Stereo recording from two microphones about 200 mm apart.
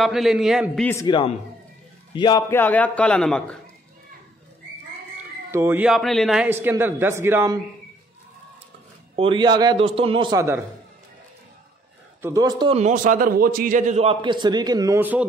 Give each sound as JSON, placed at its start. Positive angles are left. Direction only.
{"t": 0.0, "sound": "a man's voice", "side_deg": 0}
{"t": 0.8, "sound": "a man's voice", "side_deg": 20}
{"t": 5.5, "sound": "a man's voice", "side_deg": -10}
{"t": 9.1, "sound": "a man's voice", "side_deg": -25}
{"t": 12.2, "sound": "a man's voice", "side_deg": -15}